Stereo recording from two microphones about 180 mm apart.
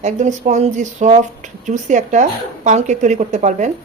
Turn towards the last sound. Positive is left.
turn(degrees=-40)  # may be behind; listen again after turning